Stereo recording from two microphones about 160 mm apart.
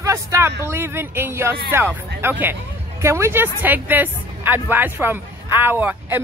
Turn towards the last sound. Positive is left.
turn(degrees=-10)  # may be behind; listen again after turning